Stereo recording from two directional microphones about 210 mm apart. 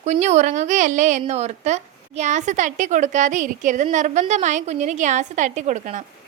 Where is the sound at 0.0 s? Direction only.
35° right (ahead or behind).